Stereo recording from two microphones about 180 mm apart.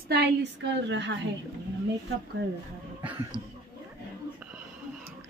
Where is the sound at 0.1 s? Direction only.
70° right (ahead or behind).